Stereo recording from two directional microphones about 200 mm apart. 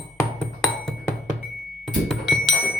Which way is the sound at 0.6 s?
Centre (ahead or behind).